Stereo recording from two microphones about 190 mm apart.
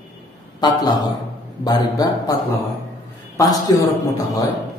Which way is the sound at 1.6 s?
20° left (ahead or behind).